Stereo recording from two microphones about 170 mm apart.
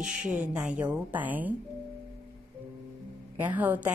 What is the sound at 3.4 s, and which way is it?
Speech, 10° right (ahead or behind).